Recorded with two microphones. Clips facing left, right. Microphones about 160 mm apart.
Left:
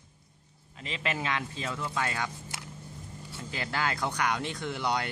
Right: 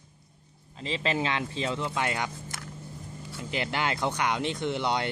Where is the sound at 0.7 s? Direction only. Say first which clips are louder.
Right 5 dB; 30° right (ahead or behind).